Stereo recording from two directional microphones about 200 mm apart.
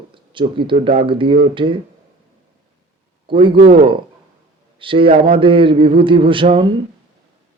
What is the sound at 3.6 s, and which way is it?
Speech, 50° right (ahead or behind).